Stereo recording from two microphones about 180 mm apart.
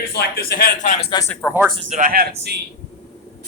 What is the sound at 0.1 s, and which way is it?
Speech, 60° left (ahead or behind).